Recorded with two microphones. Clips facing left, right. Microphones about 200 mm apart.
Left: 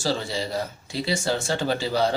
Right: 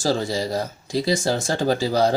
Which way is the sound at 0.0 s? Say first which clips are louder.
Right 4 dB; 45° right (ahead or behind).